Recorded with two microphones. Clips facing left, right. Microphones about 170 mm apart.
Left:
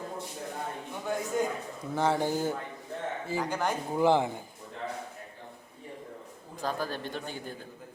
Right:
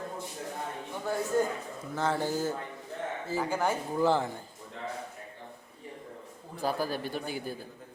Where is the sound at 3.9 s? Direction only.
15° left (ahead or behind).